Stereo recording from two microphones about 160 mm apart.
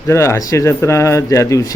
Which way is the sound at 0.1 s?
15° left (ahead or behind).